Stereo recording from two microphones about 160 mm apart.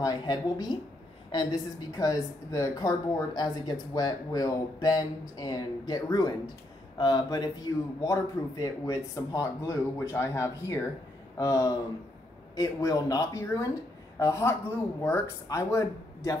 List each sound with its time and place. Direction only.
0.0 s speech: 25° left (ahead or behind)